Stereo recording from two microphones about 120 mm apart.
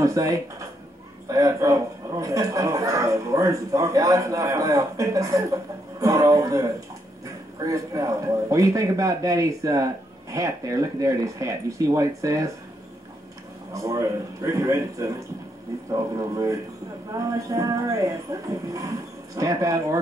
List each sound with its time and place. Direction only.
0.0 s speech: 30° right (ahead or behind)
13.7 s speech: 25° right (ahead or behind)